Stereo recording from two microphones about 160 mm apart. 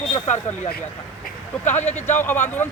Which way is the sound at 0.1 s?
45° left (ahead or behind).